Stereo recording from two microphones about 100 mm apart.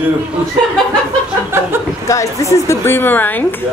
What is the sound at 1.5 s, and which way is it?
Speech, 25° right (ahead or behind).